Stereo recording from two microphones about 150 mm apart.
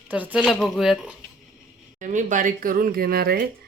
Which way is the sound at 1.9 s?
55° right (ahead or behind).